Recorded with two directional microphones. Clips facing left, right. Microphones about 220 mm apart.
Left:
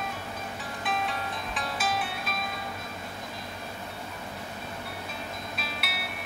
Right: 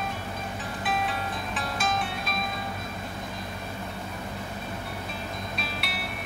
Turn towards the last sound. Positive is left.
turn(degrees=0)  # may be behind; listen again after turning